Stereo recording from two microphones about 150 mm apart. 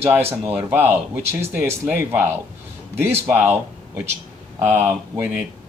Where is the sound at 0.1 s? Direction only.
15° right (ahead or behind).